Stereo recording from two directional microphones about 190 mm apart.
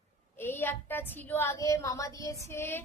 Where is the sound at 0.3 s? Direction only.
10° left (ahead or behind).